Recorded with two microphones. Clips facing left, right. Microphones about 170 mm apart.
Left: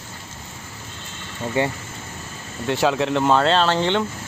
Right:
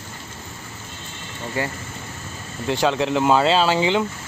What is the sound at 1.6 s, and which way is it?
Speech, 25° left (ahead or behind).